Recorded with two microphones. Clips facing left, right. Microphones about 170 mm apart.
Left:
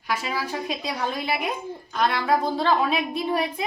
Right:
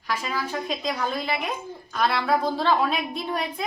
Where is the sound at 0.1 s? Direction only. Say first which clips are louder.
Left 1 dB; 10° left (ahead or behind).